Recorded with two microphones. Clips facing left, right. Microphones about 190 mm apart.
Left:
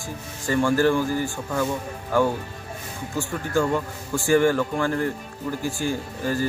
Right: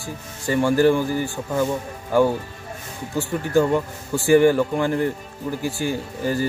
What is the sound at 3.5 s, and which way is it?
A man's voice, 20° right (ahead or behind).